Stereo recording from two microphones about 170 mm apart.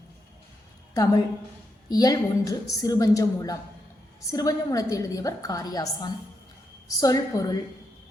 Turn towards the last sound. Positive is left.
turn(degrees=20)  # may be behind; listen again after turning